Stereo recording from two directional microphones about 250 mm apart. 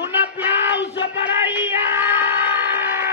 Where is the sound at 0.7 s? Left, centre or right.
Left.